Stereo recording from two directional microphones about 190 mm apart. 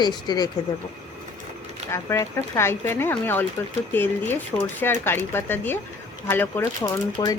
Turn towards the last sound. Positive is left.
turn(degrees=25)  # may be behind; listen again after turning